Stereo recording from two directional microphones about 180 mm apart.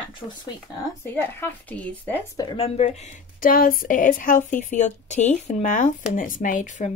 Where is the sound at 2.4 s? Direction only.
30° left (ahead or behind).